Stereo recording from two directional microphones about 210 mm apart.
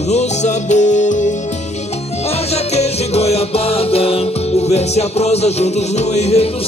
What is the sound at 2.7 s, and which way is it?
Music, 30° left (ahead or behind).